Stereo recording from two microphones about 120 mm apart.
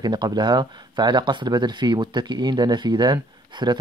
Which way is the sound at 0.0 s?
35° right (ahead or behind).